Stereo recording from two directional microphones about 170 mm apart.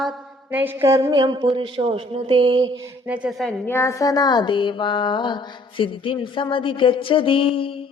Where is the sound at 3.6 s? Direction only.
15° left (ahead or behind); by 7.9 s 30° left (ahead or behind).